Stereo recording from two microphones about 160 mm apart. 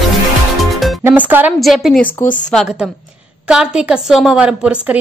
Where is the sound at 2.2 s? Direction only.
55° left (ahead or behind).